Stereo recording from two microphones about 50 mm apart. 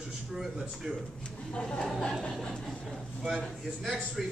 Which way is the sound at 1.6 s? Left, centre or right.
Centre.